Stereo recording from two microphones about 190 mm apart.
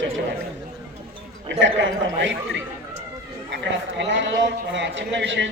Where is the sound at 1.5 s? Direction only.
75° right (ahead or behind).